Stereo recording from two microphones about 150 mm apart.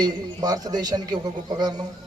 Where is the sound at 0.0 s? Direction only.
25° right (ahead or behind).